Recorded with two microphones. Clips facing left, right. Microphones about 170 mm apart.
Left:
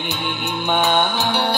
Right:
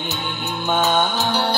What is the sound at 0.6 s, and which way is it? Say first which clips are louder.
Music: even; 15° left (ahead or behind).